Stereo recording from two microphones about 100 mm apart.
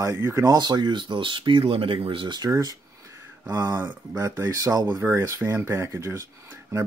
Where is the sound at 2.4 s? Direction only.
40° right (ahead or behind).